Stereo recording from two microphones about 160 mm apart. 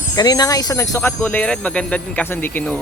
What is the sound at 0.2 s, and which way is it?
Speech, 25° left (ahead or behind).